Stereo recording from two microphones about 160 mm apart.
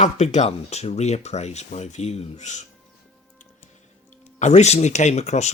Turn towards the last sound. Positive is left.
turn(degrees=45)  # may be behind; listen again after turning